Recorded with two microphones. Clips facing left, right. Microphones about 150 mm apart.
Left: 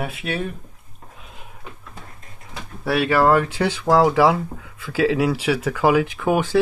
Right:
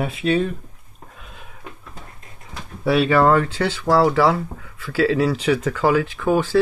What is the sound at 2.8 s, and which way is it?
Speech, 5° left (ahead or behind).